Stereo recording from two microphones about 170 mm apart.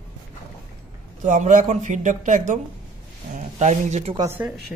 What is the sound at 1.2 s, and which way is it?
Speech, 50° right (ahead or behind).